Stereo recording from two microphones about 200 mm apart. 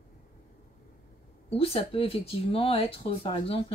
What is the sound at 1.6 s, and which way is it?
Speech, 30° left (ahead or behind).